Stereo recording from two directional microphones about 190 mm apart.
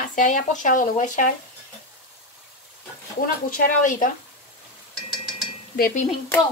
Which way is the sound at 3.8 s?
45° left (ahead or behind).